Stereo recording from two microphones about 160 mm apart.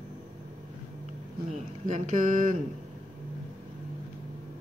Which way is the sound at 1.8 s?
50° right (ahead or behind).